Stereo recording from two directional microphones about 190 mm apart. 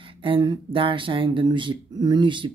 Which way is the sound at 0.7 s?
25° right (ahead or behind).